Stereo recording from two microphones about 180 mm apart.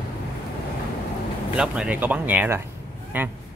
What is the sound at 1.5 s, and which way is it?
Speech, 5° right (ahead or behind).